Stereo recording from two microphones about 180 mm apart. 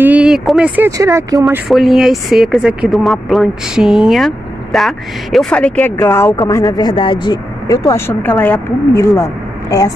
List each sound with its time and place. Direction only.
0.0 s speech: 5° right (ahead or behind)
1.7 s speech: centre (ahead or behind); by 9.9 s 20° left (ahead or behind)